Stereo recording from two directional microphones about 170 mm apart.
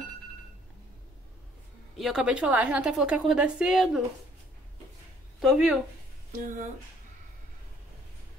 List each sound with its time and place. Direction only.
2.0 s a woman's voice: 5° right (ahead or behind)
5.4 s a woman's voice: 5° right (ahead or behind)
6.3 s speech: 45° right (ahead or behind)